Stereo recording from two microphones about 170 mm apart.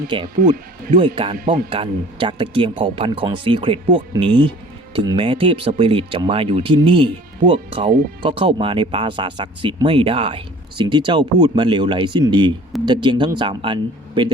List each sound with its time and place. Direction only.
0.1 s speech: 30° right (ahead or behind)
0.4 s speech: 50° right (ahead or behind)
0.9 s speech: 30° right (ahead or behind)